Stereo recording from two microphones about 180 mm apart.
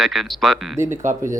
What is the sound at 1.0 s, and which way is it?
Speech, 45° right (ahead or behind).